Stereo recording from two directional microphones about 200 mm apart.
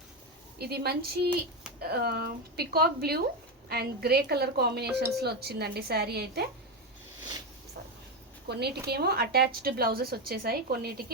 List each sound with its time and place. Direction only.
0.6 s a woman's voice: 55° right (ahead or behind)
8.4 s a woman's voice: 55° right (ahead or behind)